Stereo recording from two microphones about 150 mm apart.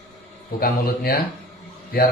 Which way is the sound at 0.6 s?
80° left.